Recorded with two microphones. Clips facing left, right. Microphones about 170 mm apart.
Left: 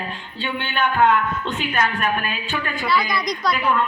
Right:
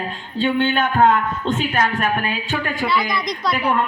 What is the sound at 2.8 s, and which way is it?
Speech, 25° right (ahead or behind).